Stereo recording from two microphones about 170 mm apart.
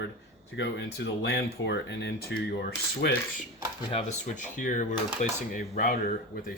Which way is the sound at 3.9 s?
40° left (ahead or behind).